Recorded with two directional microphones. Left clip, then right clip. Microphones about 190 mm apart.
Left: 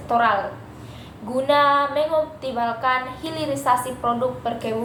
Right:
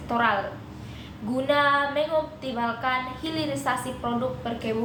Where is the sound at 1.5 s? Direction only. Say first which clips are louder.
Left 4 dB; 15° right (ahead or behind).